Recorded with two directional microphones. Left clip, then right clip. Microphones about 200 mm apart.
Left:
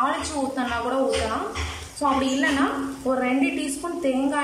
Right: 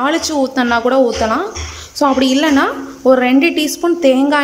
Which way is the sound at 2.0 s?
50° right (ahead or behind).